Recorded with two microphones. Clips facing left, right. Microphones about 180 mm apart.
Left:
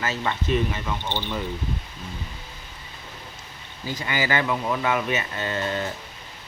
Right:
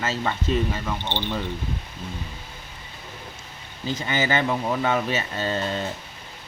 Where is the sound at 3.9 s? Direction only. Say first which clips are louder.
Right 1 dB; 25° right (ahead or behind).